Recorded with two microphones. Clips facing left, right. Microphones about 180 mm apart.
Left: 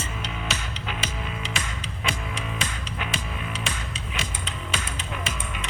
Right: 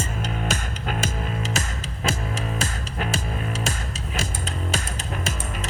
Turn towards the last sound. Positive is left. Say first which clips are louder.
# right 3 dB
turn(degrees=-45)  # may be behind; listen again after turning